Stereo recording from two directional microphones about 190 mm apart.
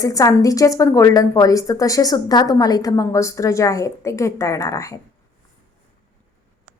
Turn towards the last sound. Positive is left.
turn(degrees=15)  # may be behind; listen again after turning